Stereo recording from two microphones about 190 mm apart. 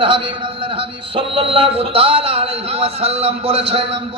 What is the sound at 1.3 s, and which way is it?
A man's voice, 30° right (ahead or behind).